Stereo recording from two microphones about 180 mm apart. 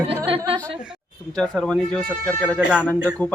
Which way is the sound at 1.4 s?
5° left (ahead or behind).